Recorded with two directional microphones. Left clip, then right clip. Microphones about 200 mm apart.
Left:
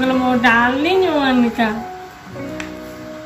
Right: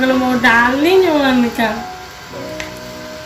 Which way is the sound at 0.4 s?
45° left (ahead or behind).